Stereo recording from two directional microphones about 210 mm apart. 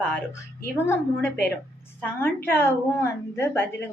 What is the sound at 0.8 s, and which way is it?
Speech, 10° left (ahead or behind).